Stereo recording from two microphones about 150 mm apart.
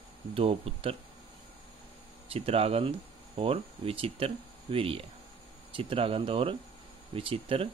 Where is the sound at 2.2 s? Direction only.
40° right (ahead or behind).